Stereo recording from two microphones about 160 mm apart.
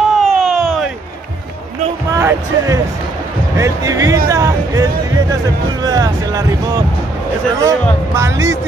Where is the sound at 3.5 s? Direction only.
20° right (ahead or behind).